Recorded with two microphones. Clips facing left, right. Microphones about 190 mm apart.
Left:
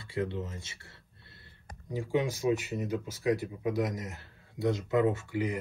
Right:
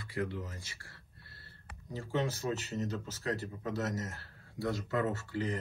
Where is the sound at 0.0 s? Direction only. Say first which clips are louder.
Left 3 dB; 25° left (ahead or behind).